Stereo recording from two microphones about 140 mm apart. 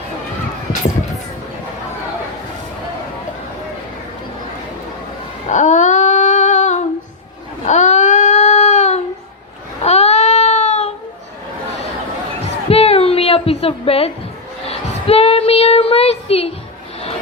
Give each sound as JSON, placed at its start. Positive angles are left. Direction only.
{"t": 5.5, "sound": "female singing", "side_deg": 60}
{"t": 7.6, "sound": "baby cry", "side_deg": 55}
{"t": 12.7, "sound": "music", "side_deg": 45}
{"t": 14.7, "sound": "a sound", "side_deg": 45}